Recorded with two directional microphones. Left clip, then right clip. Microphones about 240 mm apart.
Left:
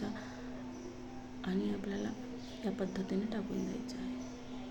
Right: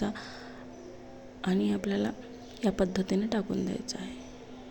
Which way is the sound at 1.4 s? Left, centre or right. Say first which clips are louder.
Right 8 dB; right.